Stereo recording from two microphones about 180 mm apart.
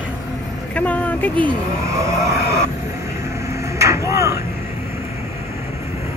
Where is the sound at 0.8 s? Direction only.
10° left (ahead or behind).